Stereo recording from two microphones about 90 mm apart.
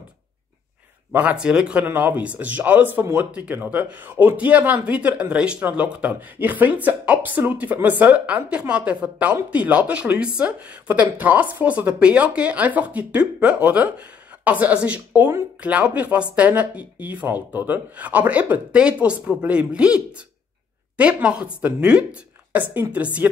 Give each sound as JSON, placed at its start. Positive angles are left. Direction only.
{"t": 1.1, "sound": "speech", "side_deg": -15}